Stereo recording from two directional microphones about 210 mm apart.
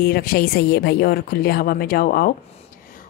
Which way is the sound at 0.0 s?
45° left (ahead or behind).